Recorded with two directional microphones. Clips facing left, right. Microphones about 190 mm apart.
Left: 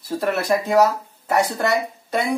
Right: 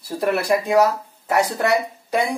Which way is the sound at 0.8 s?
10° right (ahead or behind).